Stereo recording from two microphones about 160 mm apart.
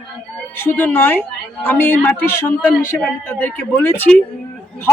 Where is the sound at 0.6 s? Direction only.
10° left (ahead or behind).